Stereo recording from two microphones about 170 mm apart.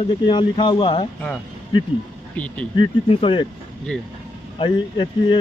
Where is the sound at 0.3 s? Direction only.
25° left (ahead or behind).